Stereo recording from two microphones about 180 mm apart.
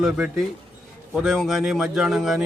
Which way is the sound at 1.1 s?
Centre (ahead or behind).